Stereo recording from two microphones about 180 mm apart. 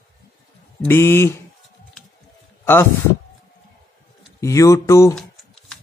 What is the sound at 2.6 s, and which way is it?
Speech, 15° left (ahead or behind).